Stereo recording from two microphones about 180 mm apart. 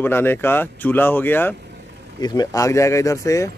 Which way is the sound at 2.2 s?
20° left (ahead or behind).